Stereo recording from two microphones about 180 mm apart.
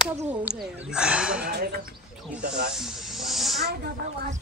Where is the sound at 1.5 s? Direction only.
60° right (ahead or behind).